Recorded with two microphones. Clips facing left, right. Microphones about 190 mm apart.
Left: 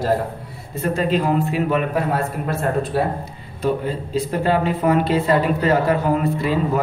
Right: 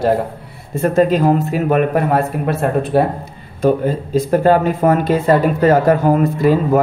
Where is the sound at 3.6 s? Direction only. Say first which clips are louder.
Right 6 dB; 45° right (ahead or behind).